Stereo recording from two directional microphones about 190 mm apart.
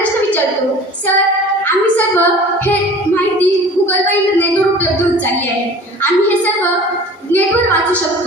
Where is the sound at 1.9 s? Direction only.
10° left (ahead or behind).